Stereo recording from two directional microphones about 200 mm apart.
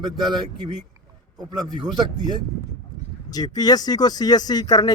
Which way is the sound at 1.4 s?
20° right (ahead or behind).